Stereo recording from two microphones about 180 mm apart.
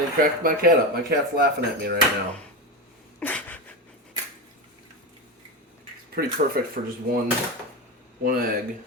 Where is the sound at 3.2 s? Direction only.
10° left (ahead or behind).